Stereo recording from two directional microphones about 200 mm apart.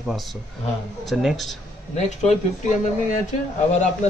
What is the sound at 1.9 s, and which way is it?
Speech, 35° left (ahead or behind).